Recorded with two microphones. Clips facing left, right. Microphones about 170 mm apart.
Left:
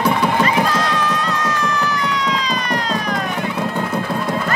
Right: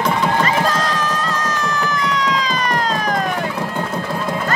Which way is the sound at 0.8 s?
45° right (ahead or behind).